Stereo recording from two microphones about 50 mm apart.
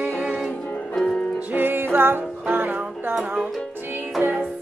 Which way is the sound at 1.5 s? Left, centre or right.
Right.